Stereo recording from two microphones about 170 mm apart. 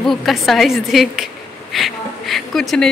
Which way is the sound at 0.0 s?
Centre (ahead or behind).